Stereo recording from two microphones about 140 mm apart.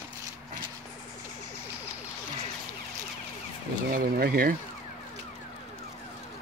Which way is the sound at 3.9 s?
90° right.